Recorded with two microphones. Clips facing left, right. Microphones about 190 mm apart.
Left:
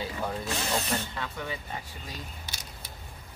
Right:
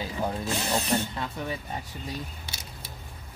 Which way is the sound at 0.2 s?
25° right (ahead or behind).